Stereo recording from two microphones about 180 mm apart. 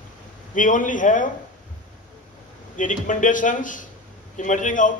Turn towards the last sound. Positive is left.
turn(degrees=45)  # may be behind; listen again after turning